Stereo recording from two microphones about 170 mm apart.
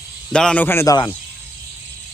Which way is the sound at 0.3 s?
5° left (ahead or behind).